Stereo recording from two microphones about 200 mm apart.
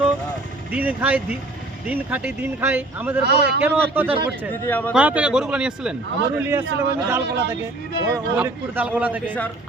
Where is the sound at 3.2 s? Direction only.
55° right (ahead or behind).